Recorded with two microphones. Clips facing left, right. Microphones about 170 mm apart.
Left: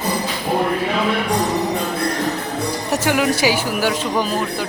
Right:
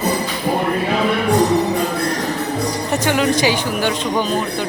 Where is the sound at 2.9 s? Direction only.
10° left (ahead or behind).